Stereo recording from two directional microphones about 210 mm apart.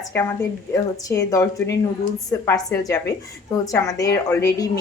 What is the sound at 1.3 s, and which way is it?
A woman's voice, 15° left (ahead or behind).